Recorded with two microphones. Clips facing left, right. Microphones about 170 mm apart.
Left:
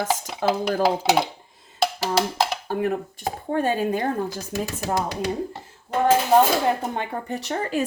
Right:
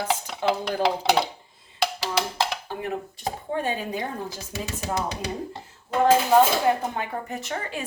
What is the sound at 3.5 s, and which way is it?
Speech, 50° left (ahead or behind).